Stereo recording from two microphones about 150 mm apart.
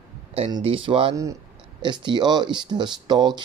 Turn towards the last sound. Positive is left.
turn(degrees=-30)  # may be behind; listen again after turning